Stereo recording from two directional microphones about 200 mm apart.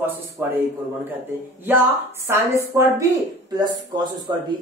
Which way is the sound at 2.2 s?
15° right (ahead or behind).